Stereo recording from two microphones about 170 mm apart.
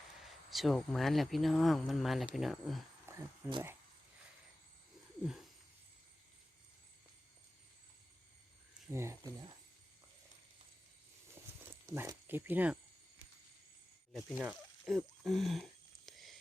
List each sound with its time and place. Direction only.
0.3 s speech: centre (ahead or behind)
3.1 s a sound: 15° right (ahead or behind)
8.9 s speech: 15° right (ahead or behind)
11.9 s speech: 15° right (ahead or behind)
14.1 s speech: centre (ahead or behind)
16.0 s a sound: centre (ahead or behind)